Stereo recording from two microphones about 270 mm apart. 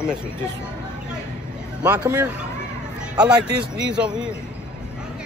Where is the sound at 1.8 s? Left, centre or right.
Centre.